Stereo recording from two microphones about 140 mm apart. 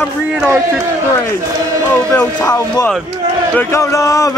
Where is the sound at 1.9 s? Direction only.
15° left (ahead or behind).